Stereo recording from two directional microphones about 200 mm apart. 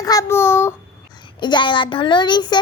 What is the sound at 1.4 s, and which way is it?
A child's voice, 25° left (ahead or behind).